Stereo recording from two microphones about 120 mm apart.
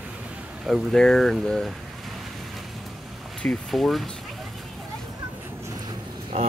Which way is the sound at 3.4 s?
5° left (ahead or behind).